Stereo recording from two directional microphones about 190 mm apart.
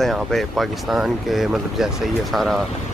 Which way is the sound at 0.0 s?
Centre (ahead or behind).